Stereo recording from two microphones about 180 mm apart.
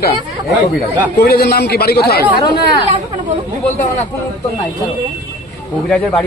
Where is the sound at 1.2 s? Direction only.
60° left (ahead or behind).